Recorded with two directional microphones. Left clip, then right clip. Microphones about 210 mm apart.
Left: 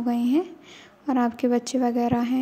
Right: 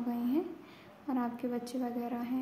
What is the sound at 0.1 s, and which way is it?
A woman's voice, 35° left (ahead or behind).